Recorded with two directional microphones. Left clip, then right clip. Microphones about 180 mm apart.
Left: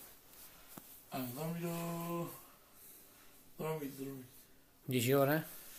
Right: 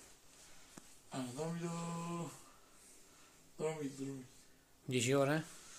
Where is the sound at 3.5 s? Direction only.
Centre (ahead or behind).